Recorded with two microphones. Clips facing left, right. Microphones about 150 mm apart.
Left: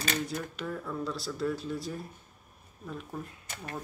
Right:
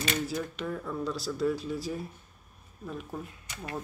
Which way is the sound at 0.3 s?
Centre (ahead or behind).